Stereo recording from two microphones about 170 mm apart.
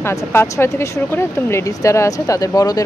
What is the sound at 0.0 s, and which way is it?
Speech, 15° left (ahead or behind).